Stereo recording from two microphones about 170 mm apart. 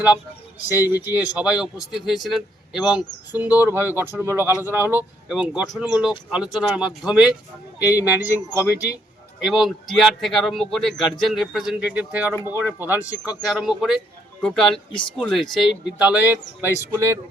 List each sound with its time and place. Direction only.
0.7 s speech: 20° left (ahead or behind)
1.0 s a man's voice: 10° right (ahead or behind)